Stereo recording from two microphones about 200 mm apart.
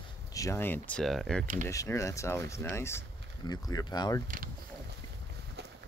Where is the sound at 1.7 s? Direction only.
15° left (ahead or behind).